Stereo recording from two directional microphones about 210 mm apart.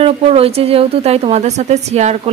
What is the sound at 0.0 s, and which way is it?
A woman's voice, 30° right (ahead or behind).